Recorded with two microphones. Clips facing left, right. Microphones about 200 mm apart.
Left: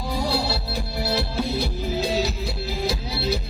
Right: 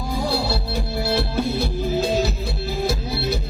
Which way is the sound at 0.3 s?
50° right (ahead or behind).